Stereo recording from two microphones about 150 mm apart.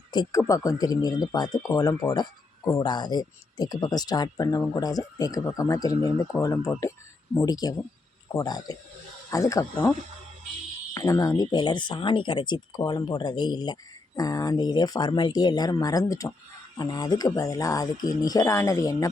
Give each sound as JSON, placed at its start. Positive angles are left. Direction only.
{"t": 0.1, "sound": "speech", "side_deg": 25}
{"t": 10.9, "sound": "speech", "side_deg": 20}